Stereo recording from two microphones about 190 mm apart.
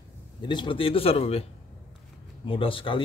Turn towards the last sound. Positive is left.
turn(degrees=25)  # may be behind; listen again after turning